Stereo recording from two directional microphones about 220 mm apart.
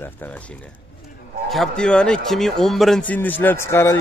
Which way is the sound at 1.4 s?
Centre (ahead or behind).